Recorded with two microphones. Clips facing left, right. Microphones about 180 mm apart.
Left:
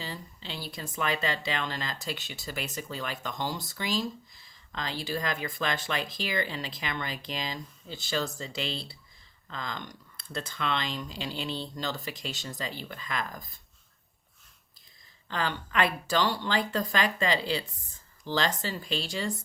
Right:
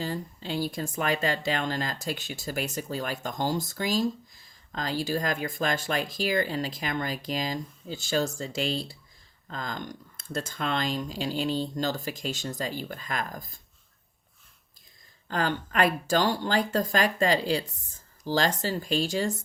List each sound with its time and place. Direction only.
0.0 s speech: 45° right (ahead or behind)
15.3 s speech: 45° right (ahead or behind)